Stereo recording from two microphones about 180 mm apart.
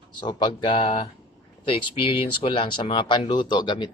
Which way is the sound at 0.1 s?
25° left (ahead or behind).